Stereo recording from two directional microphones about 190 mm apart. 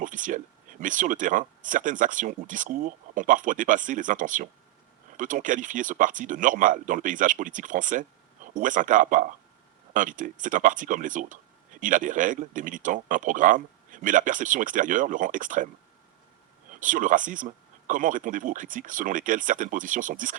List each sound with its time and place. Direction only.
0.0 s speech: 45° right (ahead or behind)
16.8 s speech: 45° right (ahead or behind)